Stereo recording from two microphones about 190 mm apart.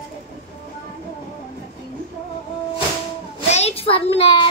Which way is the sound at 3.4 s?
35° left (ahead or behind).